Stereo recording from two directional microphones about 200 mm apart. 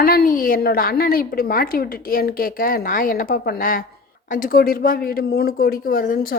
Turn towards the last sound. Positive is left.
turn(degrees=45)  # may be behind; listen again after turning